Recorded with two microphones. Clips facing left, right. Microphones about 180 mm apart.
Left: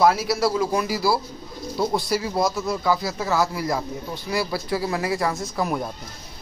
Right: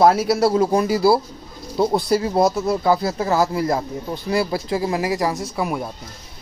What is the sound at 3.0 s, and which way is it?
Speech, 50° right (ahead or behind).